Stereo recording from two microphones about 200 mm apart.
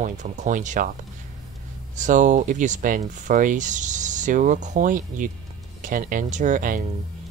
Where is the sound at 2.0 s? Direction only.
40° right (ahead or behind).